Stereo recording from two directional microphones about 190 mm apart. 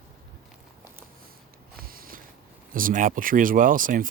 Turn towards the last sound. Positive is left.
turn(degrees=-45)  # may be behind; listen again after turning